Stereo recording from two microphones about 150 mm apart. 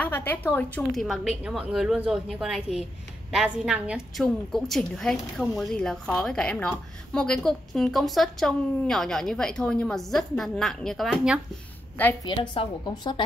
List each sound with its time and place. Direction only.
0.0 s a woman's voice: 15° left (ahead or behind); by 11.4 s centre (ahead or behind)
12.3 s speech: 30° left (ahead or behind)